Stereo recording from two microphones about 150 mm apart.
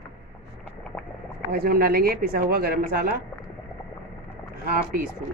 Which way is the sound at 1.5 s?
85° right.